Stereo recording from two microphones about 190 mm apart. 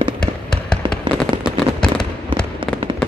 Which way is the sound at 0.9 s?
5° left (ahead or behind).